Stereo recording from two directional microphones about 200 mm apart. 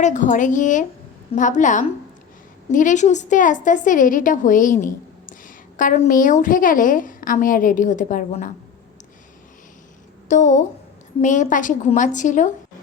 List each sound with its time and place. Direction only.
0.0 s a woman's voice: 40° left (ahead or behind)
10.2 s a woman's voice: 35° left (ahead or behind)